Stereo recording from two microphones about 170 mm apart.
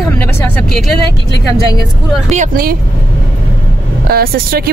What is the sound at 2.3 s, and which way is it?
Speech, 50° right (ahead or behind).